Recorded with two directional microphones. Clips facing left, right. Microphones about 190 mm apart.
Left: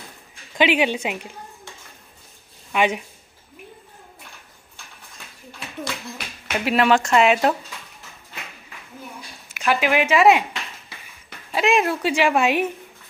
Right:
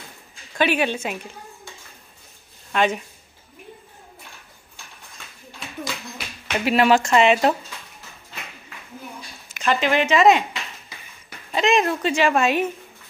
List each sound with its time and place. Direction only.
0.6 s a woman's voice: 15° left (ahead or behind)
2.7 s speech: 10° left (ahead or behind)
6.1 s speech: centre (ahead or behind)
9.5 s speech: 10° left (ahead or behind)